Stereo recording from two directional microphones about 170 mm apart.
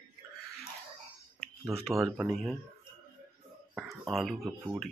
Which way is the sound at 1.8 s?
Centre (ahead or behind).